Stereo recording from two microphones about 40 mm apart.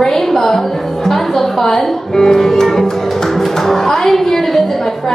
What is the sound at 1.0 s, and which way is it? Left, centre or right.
Speech, centre.